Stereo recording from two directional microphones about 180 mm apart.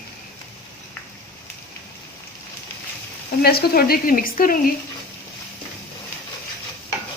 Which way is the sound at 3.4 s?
60° left (ahead or behind).